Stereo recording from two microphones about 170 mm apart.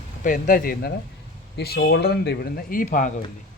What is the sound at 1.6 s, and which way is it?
Speech, 70° left (ahead or behind).